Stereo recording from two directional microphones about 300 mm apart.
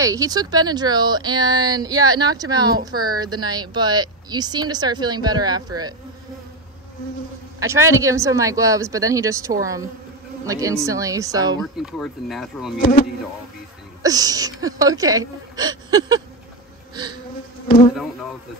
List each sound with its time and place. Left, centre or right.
0.0 s speech: centre
7.6 s speech: centre
11.6 s speech: centre
12.7 s speech: left
14.0 s speech: centre
17.6 s insect: left
17.9 s speech: centre